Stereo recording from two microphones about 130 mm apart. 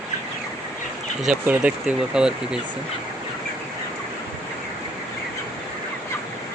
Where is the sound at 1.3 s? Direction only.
10° right (ahead or behind).